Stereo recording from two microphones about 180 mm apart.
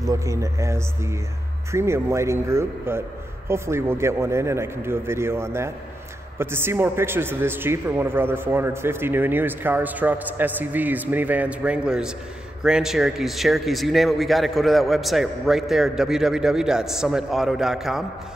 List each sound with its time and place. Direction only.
0.0 s a man's voice: 20° right (ahead or behind); by 18.0 s centre (ahead or behind)